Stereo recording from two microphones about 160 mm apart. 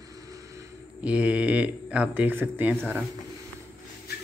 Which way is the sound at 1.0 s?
10° right (ahead or behind).